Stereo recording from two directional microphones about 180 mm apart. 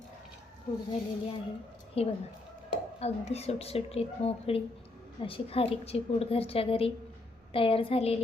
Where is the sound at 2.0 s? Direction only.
35° left (ahead or behind).